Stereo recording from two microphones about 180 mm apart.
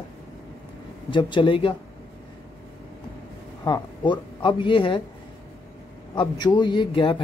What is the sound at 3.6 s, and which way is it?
Speech, 25° left (ahead or behind).